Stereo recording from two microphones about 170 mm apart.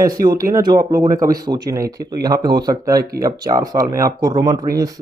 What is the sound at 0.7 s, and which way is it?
Speech, 25° right (ahead or behind).